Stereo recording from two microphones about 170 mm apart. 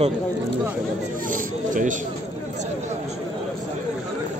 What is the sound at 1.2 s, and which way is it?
Speech, 50° right (ahead or behind).